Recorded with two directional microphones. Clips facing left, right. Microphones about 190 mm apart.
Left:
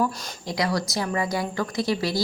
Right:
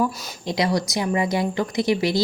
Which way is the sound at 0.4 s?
25° right (ahead or behind).